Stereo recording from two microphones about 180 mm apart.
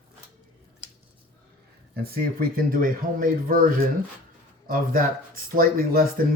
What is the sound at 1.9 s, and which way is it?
Speech, 60° right (ahead or behind).